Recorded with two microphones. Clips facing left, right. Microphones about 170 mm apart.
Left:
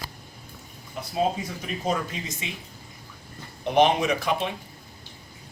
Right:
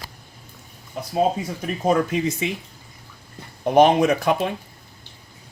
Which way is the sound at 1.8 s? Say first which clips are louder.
Right 9 dB; 60° right (ahead or behind).